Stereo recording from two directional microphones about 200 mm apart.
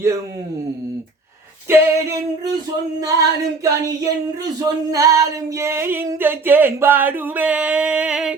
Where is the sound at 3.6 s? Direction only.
15° right (ahead or behind).